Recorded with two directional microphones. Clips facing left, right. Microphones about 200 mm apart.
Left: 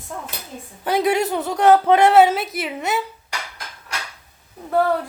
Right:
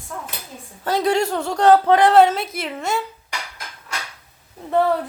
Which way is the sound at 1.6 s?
15° left (ahead or behind).